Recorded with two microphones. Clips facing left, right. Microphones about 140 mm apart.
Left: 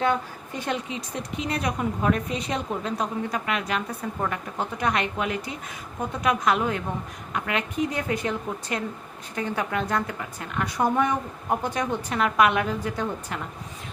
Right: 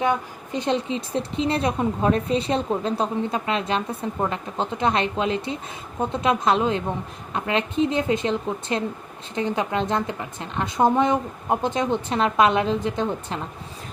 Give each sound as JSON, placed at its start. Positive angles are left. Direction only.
{"t": 0.0, "sound": "speech", "side_deg": -20}